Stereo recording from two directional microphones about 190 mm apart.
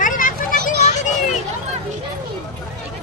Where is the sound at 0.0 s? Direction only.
45° left (ahead or behind).